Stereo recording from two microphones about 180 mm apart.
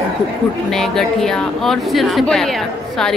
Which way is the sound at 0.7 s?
Centre (ahead or behind).